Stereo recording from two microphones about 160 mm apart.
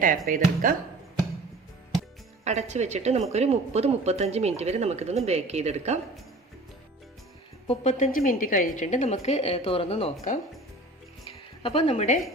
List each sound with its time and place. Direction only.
0.3 s speech: 60° right (ahead or behind)
2.4 s a woman's voice: 45° right (ahead or behind)
7.7 s a woman's voice: 50° left (ahead or behind)
11.3 s a sound: 35° left (ahead or behind)